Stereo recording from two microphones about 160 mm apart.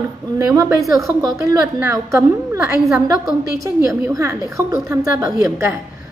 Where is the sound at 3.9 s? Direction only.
15° right (ahead or behind).